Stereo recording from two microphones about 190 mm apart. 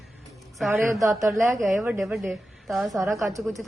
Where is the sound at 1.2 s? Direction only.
15° right (ahead or behind).